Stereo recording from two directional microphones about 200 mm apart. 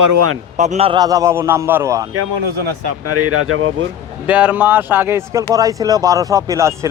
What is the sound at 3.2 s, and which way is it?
Speech, 90° right.